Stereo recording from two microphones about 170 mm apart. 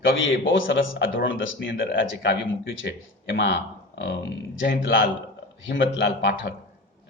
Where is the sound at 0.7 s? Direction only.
90° left.